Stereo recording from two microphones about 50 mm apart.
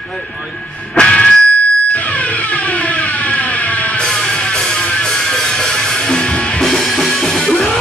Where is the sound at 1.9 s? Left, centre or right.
Left.